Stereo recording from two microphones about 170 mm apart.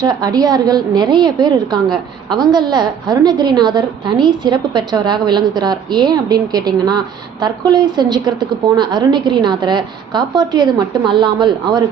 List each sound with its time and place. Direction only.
0.0 s a woman's voice: 25° right (ahead or behind)